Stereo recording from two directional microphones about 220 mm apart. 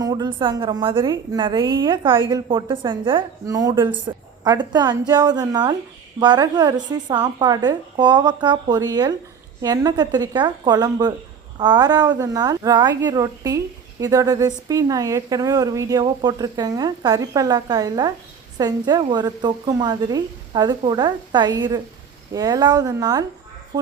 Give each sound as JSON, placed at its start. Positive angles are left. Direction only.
{"t": 0.0, "sound": "a woman's voice", "side_deg": -20}